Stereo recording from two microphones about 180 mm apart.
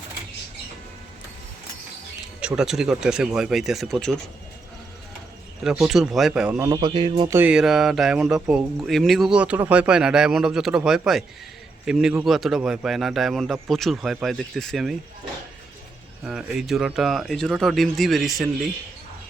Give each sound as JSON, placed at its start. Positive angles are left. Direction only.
{"t": 2.4, "sound": "speech", "side_deg": -5}
{"t": 5.6, "sound": "speech", "side_deg": 0}
{"t": 6.7, "sound": "music", "side_deg": -25}
{"t": 7.3, "sound": "speech", "side_deg": -10}
{"t": 16.2, "sound": "speech", "side_deg": -5}